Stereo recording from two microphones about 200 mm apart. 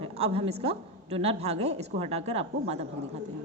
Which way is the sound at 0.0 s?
30° right (ahead or behind).